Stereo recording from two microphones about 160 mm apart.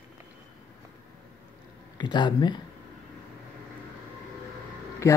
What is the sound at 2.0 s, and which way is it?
Speech, 30° left (ahead or behind).